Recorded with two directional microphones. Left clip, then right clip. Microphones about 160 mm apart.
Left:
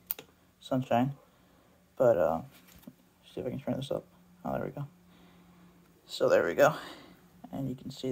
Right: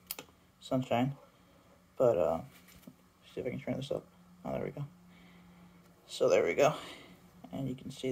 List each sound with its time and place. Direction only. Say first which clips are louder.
0.1 s computer keyboard: right 1 dB; 25° left (ahead or behind)
2.0 s speech: left 3 dB; 25° left (ahead or behind)
6.0 s speech: left 2 dB; 30° left (ahead or behind)